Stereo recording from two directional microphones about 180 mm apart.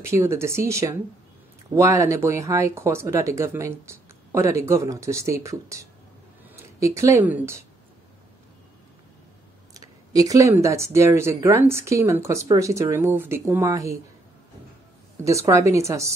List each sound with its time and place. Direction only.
0.0 s speech: 15° right (ahead or behind)
9.8 s speech: 20° right (ahead or behind)
15.2 s speech: 15° right (ahead or behind)